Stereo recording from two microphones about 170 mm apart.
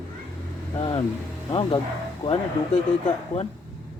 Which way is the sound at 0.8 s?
30° left (ahead or behind).